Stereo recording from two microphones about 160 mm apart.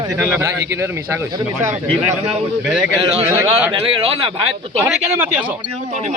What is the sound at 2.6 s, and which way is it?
Speech, 5° right (ahead or behind).